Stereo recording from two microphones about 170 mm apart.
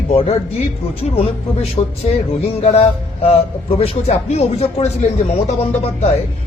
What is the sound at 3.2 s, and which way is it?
Speech, 35° left (ahead or behind).